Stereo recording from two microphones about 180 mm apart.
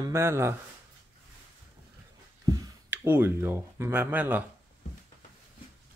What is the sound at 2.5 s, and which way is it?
Speech, 15° right (ahead or behind).